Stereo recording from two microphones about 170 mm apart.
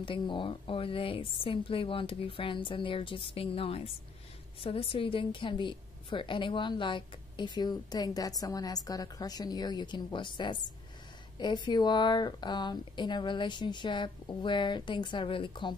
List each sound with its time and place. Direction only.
0.0 s a woman's voice: 30° left (ahead or behind)